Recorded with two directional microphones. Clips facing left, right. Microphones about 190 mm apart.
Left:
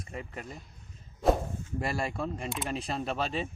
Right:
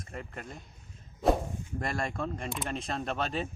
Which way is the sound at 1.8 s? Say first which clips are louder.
Left 1 dB; 5° left (ahead or behind).